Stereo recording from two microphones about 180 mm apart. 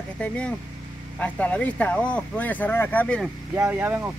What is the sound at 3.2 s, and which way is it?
Speech, 10° right (ahead or behind).